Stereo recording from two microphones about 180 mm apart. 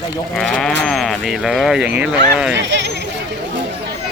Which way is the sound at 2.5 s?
80° right.